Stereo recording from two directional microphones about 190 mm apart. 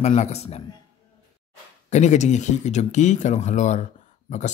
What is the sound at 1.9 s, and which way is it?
Speech, 40° left (ahead or behind).